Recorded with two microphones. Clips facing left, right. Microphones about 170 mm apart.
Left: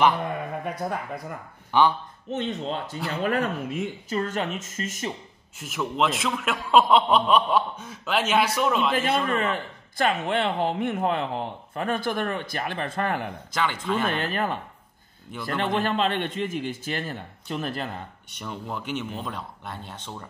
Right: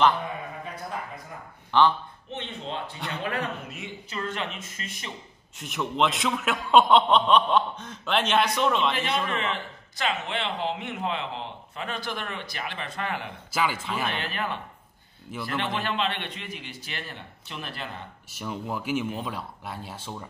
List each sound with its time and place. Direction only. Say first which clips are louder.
0.2 s speech: left 5 dB; 60° left (ahead or behind)
1.7 s speech: even; 10° left (ahead or behind)
2.3 s speech: left 6 dB; 40° left (ahead or behind)
5.6 s a man's voice: even; centre (ahead or behind)
9.3 s speech: left 4 dB; 50° left (ahead or behind)
13.5 s a man's voice: left 1 dB; 5° right (ahead or behind)
14.0 s speech: left 4 dB; 45° left (ahead or behind)
15.3 s a man's voice: right 1 dB; 5° right (ahead or behind)
15.8 s speech: left 5 dB; 45° left (ahead or behind)
18.3 s a man's voice: right 2 dB; 5° right (ahead or behind)